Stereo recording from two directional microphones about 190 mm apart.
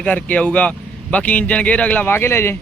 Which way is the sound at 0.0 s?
5° left (ahead or behind).